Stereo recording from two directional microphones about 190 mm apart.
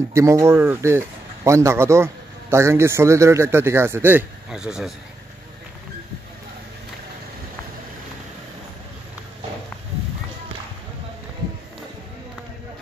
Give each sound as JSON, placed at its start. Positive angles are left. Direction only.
{"t": 0.1, "sound": "a man's voice", "side_deg": -15}